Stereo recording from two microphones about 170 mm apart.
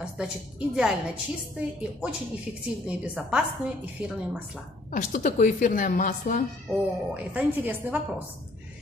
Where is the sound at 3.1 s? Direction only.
5° right (ahead or behind).